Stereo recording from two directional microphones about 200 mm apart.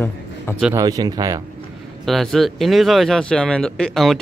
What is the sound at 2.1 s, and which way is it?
Speech, centre (ahead or behind).